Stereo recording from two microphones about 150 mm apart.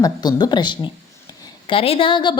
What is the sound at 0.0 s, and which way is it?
A woman's voice, 25° left (ahead or behind).